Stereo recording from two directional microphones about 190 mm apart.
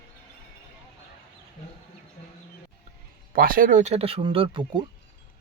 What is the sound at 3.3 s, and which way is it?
Speech, 50° right (ahead or behind).